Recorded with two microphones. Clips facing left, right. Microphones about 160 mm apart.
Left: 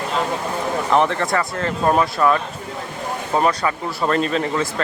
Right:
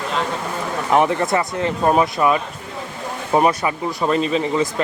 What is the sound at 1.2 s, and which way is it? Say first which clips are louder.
Speech: right 2 dB; 20° right (ahead or behind).